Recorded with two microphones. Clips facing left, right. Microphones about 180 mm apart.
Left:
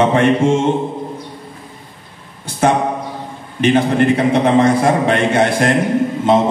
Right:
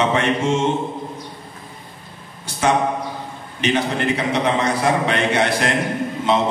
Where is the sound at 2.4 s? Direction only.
55° left (ahead or behind).